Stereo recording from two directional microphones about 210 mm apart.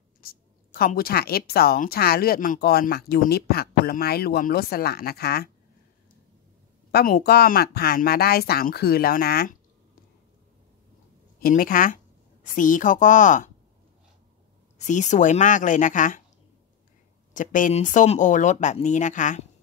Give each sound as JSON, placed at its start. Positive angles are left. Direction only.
{"t": 0.2, "sound": "speech", "side_deg": 45}
{"t": 6.9, "sound": "speech", "side_deg": 45}
{"t": 11.3, "sound": "speech", "side_deg": 40}
{"t": 14.9, "sound": "speech", "side_deg": 35}
{"t": 17.3, "sound": "speech", "side_deg": 40}